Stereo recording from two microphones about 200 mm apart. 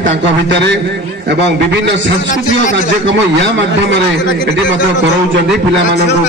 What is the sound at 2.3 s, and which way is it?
Speech, 40° left (ahead or behind).